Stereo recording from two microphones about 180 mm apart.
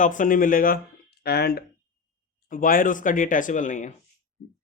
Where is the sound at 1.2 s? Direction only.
60° left (ahead or behind).